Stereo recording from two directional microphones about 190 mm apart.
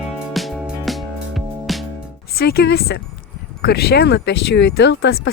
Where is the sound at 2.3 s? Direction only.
55° left (ahead or behind).